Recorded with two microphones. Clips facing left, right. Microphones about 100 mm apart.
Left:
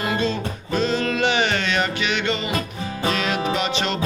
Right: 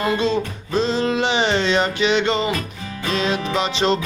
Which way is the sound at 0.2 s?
25° right (ahead or behind).